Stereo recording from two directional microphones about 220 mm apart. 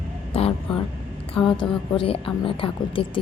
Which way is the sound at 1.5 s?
25° left (ahead or behind).